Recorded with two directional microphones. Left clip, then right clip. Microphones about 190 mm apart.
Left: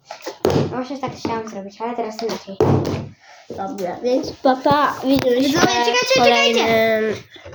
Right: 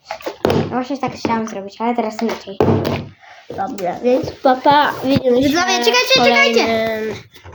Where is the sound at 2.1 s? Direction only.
10° right (ahead or behind).